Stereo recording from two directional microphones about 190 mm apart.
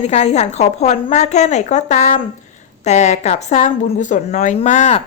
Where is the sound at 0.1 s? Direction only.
35° left (ahead or behind).